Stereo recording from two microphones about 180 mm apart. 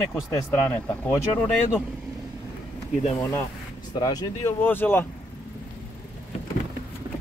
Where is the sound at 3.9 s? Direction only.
20° left (ahead or behind).